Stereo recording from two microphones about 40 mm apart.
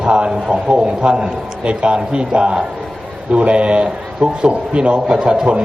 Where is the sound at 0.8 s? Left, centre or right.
Right.